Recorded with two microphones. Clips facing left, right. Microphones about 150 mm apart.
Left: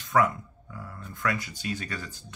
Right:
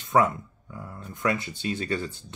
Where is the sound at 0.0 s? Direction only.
25° right (ahead or behind).